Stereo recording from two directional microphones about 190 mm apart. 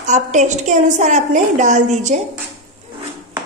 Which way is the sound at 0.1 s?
40° right (ahead or behind).